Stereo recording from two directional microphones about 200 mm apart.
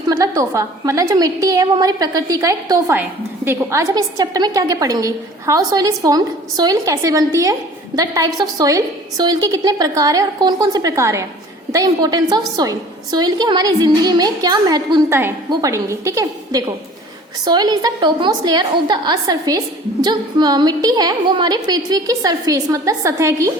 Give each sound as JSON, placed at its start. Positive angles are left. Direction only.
{"t": 0.1, "sound": "a woman's voice", "side_deg": -15}